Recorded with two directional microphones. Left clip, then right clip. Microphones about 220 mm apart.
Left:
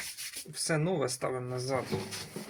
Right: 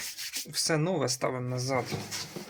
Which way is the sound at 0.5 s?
50° right (ahead or behind).